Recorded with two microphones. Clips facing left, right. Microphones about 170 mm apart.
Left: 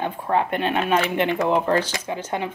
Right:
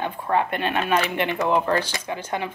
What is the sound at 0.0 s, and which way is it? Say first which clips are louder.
Speech: left 1 dB; 15° left (ahead or behind).